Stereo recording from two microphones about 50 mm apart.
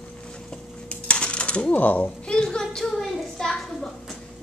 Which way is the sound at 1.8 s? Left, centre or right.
Left.